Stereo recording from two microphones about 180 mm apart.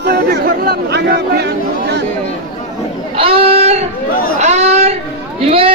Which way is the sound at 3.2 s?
30° right (ahead or behind).